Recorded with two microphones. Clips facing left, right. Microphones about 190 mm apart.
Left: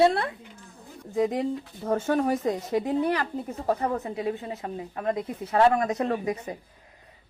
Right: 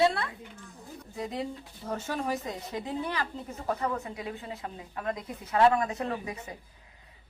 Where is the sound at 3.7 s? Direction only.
35° left (ahead or behind).